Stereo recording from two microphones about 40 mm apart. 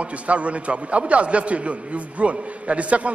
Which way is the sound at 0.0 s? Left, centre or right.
Right.